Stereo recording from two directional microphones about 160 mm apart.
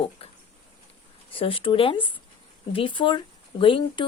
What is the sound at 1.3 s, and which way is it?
Speech, 35° left (ahead or behind).